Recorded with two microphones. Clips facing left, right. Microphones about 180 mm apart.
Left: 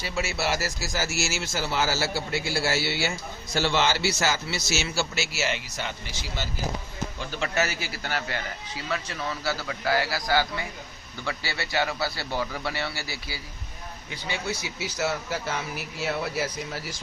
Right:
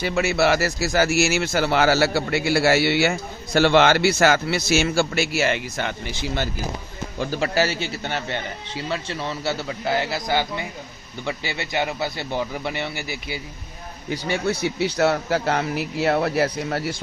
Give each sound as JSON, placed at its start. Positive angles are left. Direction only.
{"t": 0.0, "sound": "speech", "side_deg": -60}
{"t": 7.2, "sound": "a man's voice", "side_deg": -40}
{"t": 14.1, "sound": "speech", "side_deg": -55}